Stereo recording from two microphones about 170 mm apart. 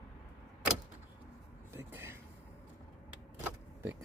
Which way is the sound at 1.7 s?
15° right (ahead or behind).